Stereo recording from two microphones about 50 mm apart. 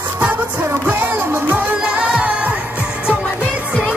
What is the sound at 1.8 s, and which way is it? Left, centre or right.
Music, right.